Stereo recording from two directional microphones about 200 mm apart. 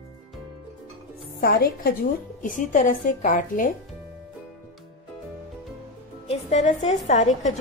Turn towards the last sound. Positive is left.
turn(degrees=35)  # may be behind; listen again after turning